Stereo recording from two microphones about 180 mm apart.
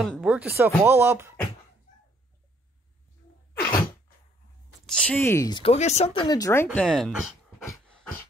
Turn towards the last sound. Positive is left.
turn(degrees=0)  # may be behind; listen again after turning